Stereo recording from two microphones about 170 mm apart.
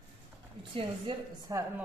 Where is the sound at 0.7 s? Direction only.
30° right (ahead or behind).